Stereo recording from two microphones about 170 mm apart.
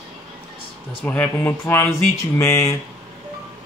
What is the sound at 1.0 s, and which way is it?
Speech, 10° left (ahead or behind).